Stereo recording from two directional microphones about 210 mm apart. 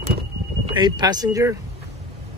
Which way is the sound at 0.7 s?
20° right (ahead or behind).